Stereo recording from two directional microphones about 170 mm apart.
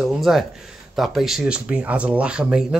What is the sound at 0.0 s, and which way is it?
Speech, centre (ahead or behind).